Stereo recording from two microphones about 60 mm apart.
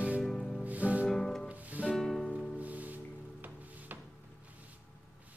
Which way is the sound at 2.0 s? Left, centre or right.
Centre.